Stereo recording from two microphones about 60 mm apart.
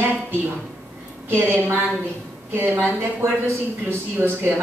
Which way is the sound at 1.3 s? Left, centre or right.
Right.